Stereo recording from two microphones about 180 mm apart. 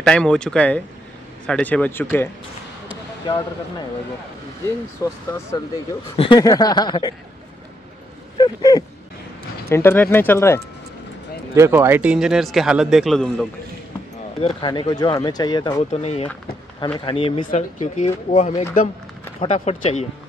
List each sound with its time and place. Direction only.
0.0 s speech: 5° left (ahead or behind)
4.6 s speech: 15° left (ahead or behind)
6.1 s speech: 25° left (ahead or behind)
8.4 s speech: 20° left (ahead or behind)
11.5 s speech: 15° right (ahead or behind); by 13.5 s centre (ahead or behind)
14.4 s speech: 25° left (ahead or behind)
15.9 s speech: 35° left (ahead or behind)
17.5 s speech: 40° left (ahead or behind)